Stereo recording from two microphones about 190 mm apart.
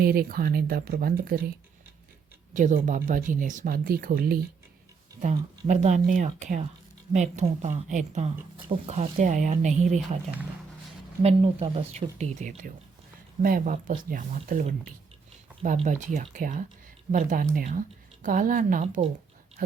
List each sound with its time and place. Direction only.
0.0 s speech: 55° right (ahead or behind)
2.5 s speech: 40° right (ahead or behind)
5.2 s speech: 40° right (ahead or behind)
11.2 s speech: 30° right (ahead or behind)